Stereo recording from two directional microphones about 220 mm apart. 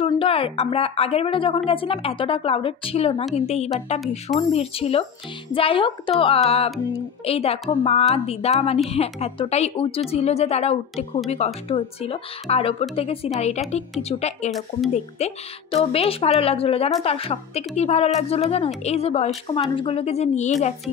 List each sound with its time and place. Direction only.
0.2 s a woman's voice: 25° left (ahead or behind)